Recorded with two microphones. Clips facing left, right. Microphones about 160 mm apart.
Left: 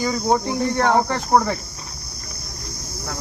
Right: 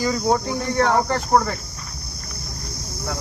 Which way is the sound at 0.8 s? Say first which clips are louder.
Right 1 dB; 10° left (ahead or behind).